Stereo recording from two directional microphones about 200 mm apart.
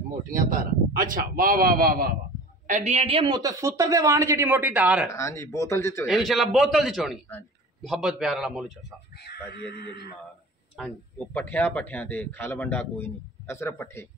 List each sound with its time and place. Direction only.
0.3 s a man's voice: 40° right (ahead or behind)
2.6 s speech: 35° right (ahead or behind); by 5.1 s 5° right (ahead or behind)
5.1 s speech: 15° left (ahead or behind)
6.0 s a man's voice: centre (ahead or behind)
9.7 s speech: 55° left (ahead or behind)
10.8 s speech: 10° left (ahead or behind)